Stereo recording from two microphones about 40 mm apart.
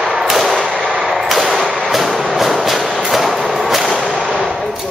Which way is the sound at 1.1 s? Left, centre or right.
Centre.